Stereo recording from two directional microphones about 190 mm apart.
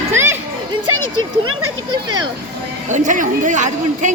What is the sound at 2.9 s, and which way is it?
A man's voice, 40° right (ahead or behind).